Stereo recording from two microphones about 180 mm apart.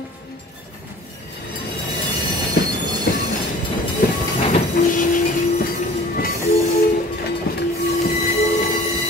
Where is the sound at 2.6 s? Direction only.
55° left (ahead or behind).